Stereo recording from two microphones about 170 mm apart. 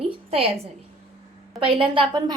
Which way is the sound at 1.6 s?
30° right (ahead or behind).